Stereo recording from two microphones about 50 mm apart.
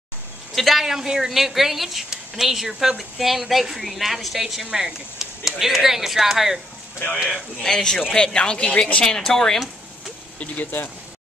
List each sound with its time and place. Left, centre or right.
0.6 s speech: centre
0.8 s speech: centre
7.6 s a man's voice: centre
9.2 s a man's voice: centre
10.4 s speech: left